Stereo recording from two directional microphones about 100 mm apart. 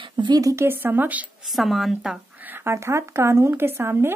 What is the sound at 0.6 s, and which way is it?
Speech, 20° right (ahead or behind).